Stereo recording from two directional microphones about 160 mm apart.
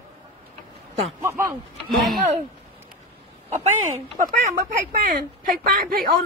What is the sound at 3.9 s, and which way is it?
Speech, 45° right (ahead or behind).